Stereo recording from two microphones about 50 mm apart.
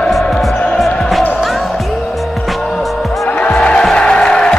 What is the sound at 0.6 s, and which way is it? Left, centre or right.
Music, centre.